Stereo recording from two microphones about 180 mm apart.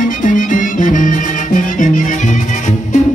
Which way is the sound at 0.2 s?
45° left (ahead or behind).